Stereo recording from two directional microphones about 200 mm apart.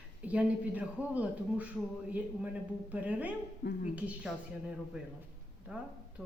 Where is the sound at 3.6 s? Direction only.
55° left (ahead or behind).